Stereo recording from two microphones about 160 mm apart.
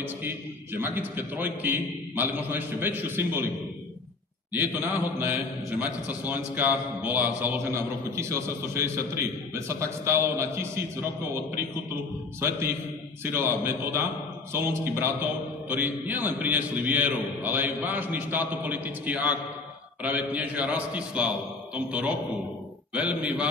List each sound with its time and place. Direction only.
0.0 s a man's voice: 10° right (ahead or behind)
4.5 s a man's voice: 15° right (ahead or behind)